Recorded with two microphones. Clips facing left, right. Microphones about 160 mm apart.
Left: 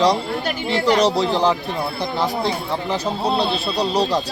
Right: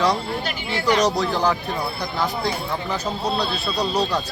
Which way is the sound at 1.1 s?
20° left (ahead or behind).